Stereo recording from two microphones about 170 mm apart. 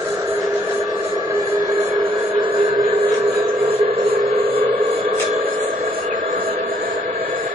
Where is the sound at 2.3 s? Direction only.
30° right (ahead or behind).